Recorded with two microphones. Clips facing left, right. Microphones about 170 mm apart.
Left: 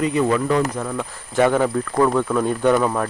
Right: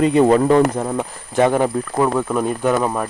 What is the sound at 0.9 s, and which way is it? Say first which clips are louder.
Speech: right 2 dB; 20° right (ahead or behind).